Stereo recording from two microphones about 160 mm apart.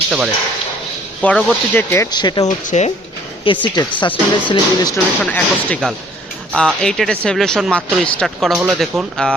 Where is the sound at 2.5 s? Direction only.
50° left (ahead or behind).